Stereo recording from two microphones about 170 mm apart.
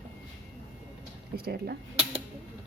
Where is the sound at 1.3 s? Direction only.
65° right (ahead or behind).